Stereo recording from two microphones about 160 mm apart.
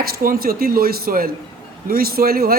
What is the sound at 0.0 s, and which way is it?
Speech, 65° right (ahead or behind).